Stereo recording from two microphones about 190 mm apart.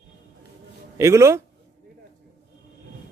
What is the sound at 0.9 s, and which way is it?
Speech, 15° right (ahead or behind).